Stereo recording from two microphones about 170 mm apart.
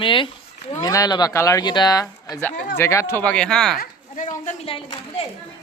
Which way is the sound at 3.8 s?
50° left (ahead or behind).